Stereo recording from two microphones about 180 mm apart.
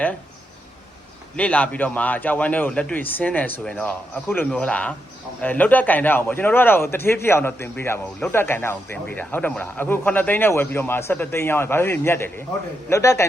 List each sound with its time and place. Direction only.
1.4 s a man's voice: 10° left (ahead or behind)